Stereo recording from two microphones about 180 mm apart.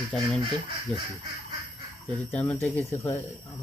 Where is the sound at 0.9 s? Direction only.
5° left (ahead or behind).